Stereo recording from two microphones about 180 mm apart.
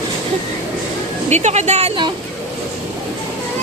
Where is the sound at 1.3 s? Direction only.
40° right (ahead or behind).